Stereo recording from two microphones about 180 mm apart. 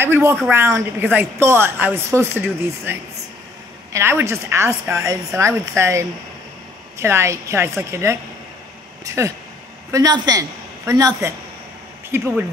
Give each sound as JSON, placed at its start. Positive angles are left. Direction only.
{"t": 0.0, "sound": "a woman's voice", "side_deg": -15}